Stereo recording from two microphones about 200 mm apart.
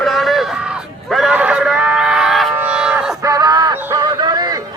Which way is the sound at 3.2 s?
20° right (ahead or behind).